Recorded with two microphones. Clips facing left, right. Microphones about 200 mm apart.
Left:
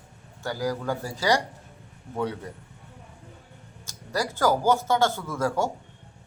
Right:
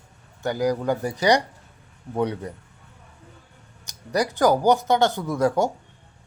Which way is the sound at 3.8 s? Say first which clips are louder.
Right 5 dB; 20° right (ahead or behind).